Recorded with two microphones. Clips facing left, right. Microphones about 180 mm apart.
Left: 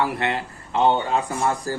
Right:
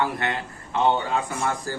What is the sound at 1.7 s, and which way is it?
Speech, 35° left (ahead or behind).